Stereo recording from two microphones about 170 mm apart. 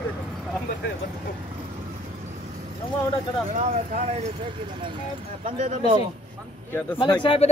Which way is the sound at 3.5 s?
50° right (ahead or behind).